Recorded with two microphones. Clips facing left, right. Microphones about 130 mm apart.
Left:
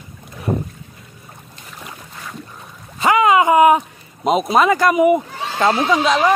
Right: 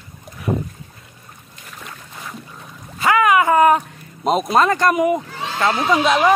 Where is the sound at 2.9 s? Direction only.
25° left (ahead or behind).